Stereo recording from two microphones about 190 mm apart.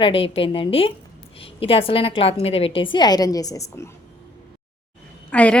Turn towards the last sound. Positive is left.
turn(degrees=5)  # may be behind; listen again after turning